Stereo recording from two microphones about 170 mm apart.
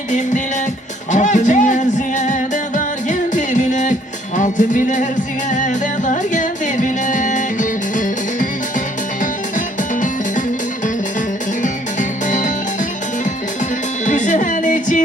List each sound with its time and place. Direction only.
1.1 s music: 45° left (ahead or behind)
4.4 s speech: 50° left (ahead or behind)
5.5 s music: 45° left (ahead or behind)
9.6 s music: 50° left (ahead or behind)
11.6 s music: 50° left (ahead or behind)
14.0 s music: 45° left (ahead or behind)